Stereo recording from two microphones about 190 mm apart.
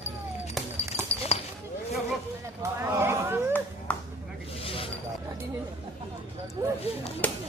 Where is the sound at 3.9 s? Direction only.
5° left (ahead or behind).